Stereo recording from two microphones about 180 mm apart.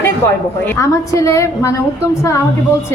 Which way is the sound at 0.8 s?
15° left (ahead or behind).